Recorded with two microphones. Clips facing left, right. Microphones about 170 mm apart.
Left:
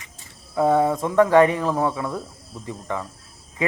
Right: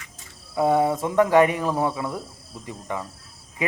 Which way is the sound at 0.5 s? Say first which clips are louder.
Left 1 dB; 15° right (ahead or behind).